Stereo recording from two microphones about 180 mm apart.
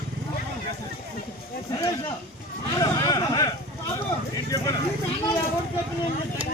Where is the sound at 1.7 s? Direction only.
20° left (ahead or behind).